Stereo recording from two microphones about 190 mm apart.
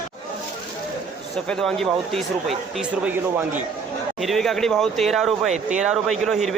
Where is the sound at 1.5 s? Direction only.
Centre (ahead or behind).